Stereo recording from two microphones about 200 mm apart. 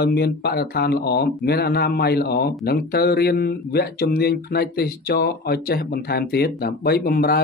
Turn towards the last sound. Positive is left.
turn(degrees=50)  # may be behind; listen again after turning